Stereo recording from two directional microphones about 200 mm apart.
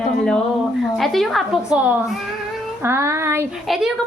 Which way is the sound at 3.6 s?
Centre (ahead or behind).